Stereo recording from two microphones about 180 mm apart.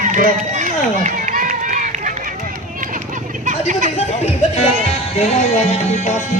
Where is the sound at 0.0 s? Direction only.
45° right (ahead or behind).